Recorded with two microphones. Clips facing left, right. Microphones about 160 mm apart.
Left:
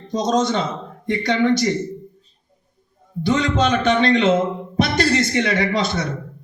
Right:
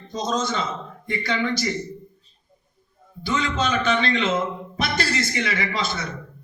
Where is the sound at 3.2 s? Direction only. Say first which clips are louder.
Left 6 dB; 65° left (ahead or behind).